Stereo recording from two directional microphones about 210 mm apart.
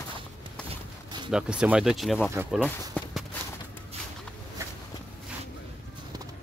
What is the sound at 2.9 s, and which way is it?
Walk, 5° left (ahead or behind).